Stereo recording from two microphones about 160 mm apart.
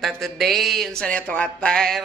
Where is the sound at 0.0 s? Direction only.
Centre (ahead or behind).